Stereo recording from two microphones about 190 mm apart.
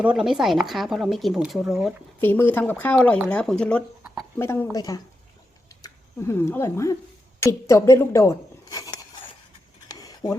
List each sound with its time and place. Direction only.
0.0 s speech: 5° right (ahead or behind)
2.2 s speech: 10° left (ahead or behind)
9.9 s a sound: 20° left (ahead or behind)